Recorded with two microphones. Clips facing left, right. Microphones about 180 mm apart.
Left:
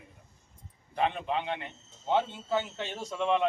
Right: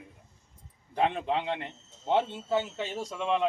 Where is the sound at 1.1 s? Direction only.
90° right.